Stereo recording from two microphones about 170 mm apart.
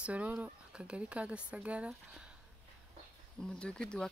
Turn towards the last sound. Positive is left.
turn(degrees=5)  # may be behind; listen again after turning